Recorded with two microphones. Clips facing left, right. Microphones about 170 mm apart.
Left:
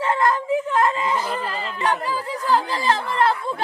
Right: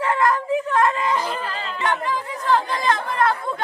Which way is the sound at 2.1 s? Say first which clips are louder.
Even; 35° left (ahead or behind).